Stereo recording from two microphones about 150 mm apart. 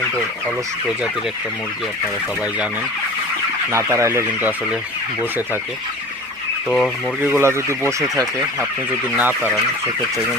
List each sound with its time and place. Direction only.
3.7 s speech: 20° right (ahead or behind)
6.7 s speech: centre (ahead or behind)
7.2 s speech: 15° right (ahead or behind)